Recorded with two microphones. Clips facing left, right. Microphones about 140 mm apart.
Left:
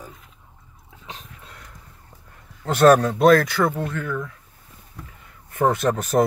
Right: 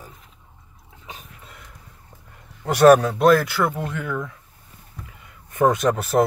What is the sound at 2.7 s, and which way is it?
Speech, 10° right (ahead or behind).